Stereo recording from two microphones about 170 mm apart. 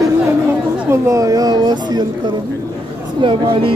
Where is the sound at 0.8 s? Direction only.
20° right (ahead or behind).